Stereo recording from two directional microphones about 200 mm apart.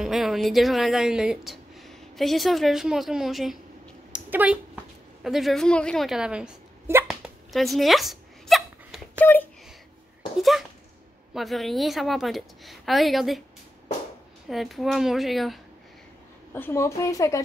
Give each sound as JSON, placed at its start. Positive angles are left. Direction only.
{"t": 0.0, "sound": "speech", "side_deg": 0}
{"t": 4.1, "sound": "a sound", "side_deg": -5}
{"t": 5.2, "sound": "speech", "side_deg": 0}
{"t": 7.5, "sound": "hiccup", "side_deg": 0}
{"t": 9.2, "sound": "a woman's voice", "side_deg": 10}
{"t": 11.3, "sound": "speech", "side_deg": 0}
{"t": 14.5, "sound": "speech", "side_deg": 0}
{"t": 16.5, "sound": "a woman's voice", "side_deg": 10}